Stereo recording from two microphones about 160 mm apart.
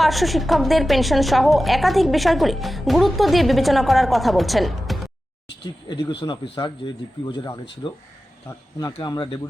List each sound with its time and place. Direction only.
0.0 s a woman's voice: centre (ahead or behind)
5.9 s speech: 30° left (ahead or behind)